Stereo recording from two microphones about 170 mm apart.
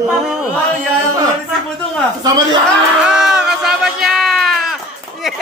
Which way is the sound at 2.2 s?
25° right (ahead or behind).